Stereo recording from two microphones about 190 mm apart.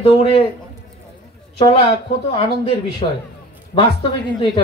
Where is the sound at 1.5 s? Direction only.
30° left (ahead or behind).